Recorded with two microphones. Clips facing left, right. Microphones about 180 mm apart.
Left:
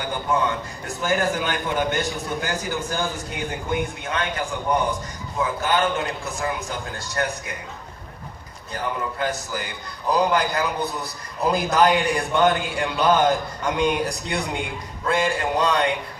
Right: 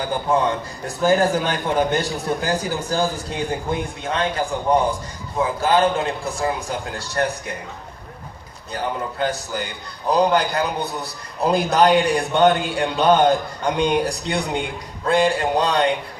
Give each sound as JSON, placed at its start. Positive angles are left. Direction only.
{"t": 1.0, "sound": "a man's voice", "side_deg": -35}
{"t": 8.8, "sound": "a man's voice", "side_deg": -30}